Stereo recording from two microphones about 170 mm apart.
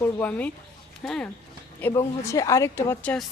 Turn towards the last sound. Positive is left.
turn(degrees=15)  # may be behind; listen again after turning